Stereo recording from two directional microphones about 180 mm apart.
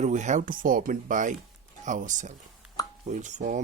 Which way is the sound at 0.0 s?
40° right (ahead or behind).